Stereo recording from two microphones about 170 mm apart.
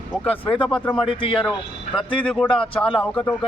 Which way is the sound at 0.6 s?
5° left (ahead or behind).